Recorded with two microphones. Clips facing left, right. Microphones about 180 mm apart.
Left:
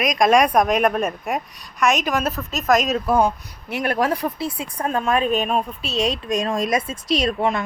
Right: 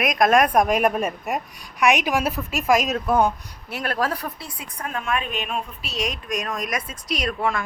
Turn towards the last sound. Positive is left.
turn(degrees=25)  # may be behind; listen again after turning